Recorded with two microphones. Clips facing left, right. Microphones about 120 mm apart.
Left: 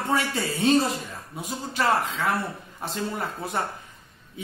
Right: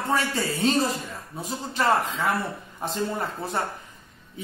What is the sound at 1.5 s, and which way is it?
Speech, centre (ahead or behind).